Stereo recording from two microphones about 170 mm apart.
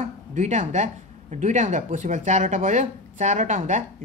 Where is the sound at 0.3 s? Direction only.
45° right (ahead or behind).